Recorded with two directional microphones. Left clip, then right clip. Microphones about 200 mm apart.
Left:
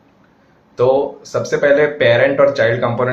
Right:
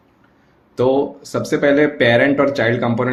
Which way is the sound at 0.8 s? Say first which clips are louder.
Left 2 dB; 40° right (ahead or behind).